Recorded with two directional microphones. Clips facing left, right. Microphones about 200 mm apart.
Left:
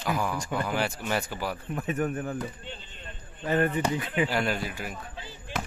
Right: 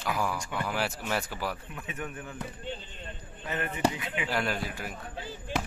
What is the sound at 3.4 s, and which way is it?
Speech, 40° left (ahead or behind).